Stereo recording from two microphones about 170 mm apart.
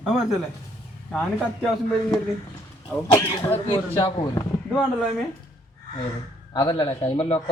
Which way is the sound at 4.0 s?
25° left (ahead or behind).